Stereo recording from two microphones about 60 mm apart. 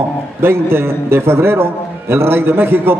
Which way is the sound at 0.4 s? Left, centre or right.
Right.